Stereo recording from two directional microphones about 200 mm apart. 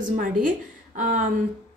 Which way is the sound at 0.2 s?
40° right (ahead or behind).